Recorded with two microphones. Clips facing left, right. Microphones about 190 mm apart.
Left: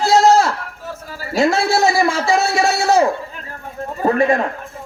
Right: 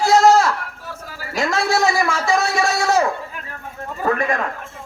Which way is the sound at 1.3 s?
30° left (ahead or behind).